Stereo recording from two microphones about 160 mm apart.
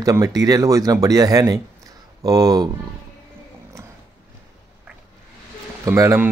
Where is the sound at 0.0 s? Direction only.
20° right (ahead or behind).